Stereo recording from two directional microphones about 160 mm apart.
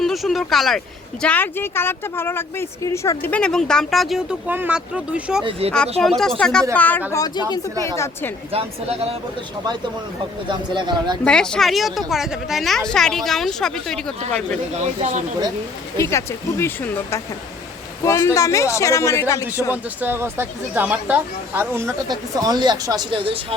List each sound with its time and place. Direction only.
0.0 s a woman's voice: centre (ahead or behind)
5.4 s speech: 35° right (ahead or behind)
6.0 s a woman's voice: 5° left (ahead or behind)
7.1 s a woman's voice: 20° left (ahead or behind)
8.5 s speech: 40° right (ahead or behind)
10.5 s speech: 30° right (ahead or behind)
11.3 s a woman's voice: 5° left (ahead or behind)
14.8 s speech: 45° right (ahead or behind)
16.0 s a woman's voice: 15° left (ahead or behind)
19.7 s speech: 10° right (ahead or behind)
22.1 s speech: 25° right (ahead or behind)